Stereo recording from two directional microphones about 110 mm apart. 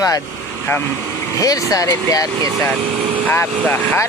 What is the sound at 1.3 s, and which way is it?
Speech, 30° left (ahead or behind).